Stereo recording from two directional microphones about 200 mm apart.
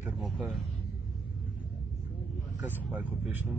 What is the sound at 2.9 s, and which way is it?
Speech, 10° right (ahead or behind).